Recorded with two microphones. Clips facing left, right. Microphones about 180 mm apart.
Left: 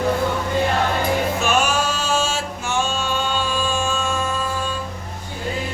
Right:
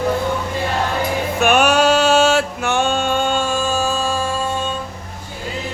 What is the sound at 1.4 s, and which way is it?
Music, 65° right (ahead or behind).